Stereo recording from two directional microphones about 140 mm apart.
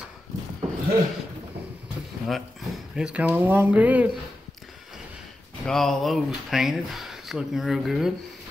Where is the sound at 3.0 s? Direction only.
10° right (ahead or behind).